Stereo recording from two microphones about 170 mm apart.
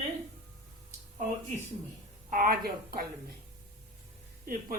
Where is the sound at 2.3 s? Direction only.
55° right (ahead or behind).